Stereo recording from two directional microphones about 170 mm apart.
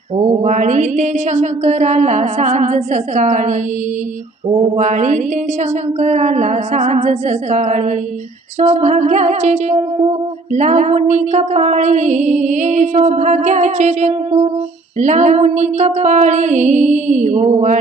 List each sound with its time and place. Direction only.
0.2 s music: 45° right (ahead or behind)